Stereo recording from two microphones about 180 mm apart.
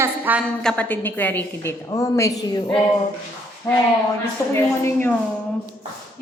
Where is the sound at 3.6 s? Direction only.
15° left (ahead or behind).